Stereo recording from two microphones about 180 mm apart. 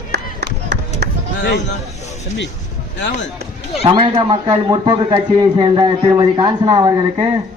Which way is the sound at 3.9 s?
25° right (ahead or behind).